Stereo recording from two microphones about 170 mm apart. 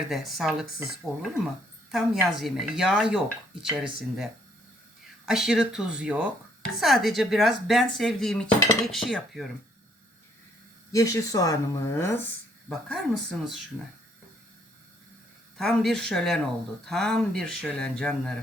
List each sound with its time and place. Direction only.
0.1 s speech: centre (ahead or behind)
1.9 s speech: centre (ahead or behind)
10.9 s speech: 20° left (ahead or behind)
12.6 s speech: centre (ahead or behind)
15.5 s speech: centre (ahead or behind)